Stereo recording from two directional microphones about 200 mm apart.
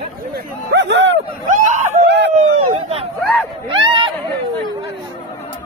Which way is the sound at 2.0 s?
60° right (ahead or behind).